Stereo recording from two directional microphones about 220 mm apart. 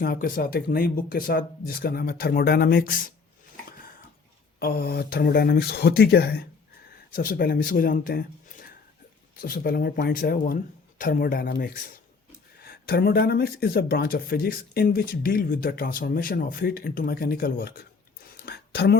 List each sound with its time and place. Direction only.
0.0 s speech: 40° left (ahead or behind)
4.6 s speech: 45° left (ahead or behind)